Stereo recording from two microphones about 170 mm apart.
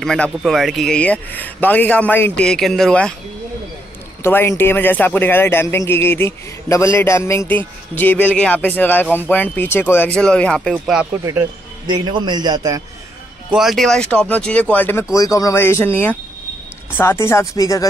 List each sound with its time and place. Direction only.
0.0 s a man's voice: 5° left (ahead or behind)
4.2 s a man's voice: 15° left (ahead or behind)
10.7 s speech: 5° right (ahead or behind)
11.9 s a man's voice: 25° right (ahead or behind)
13.5 s a man's voice: centre (ahead or behind); by 17.8 s 20° left (ahead or behind)